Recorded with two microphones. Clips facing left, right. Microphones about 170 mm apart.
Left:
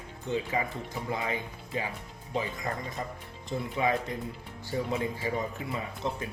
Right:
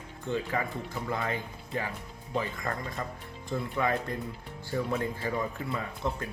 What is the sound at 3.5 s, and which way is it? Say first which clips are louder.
Speech: left 1 dB; 20° left (ahead or behind).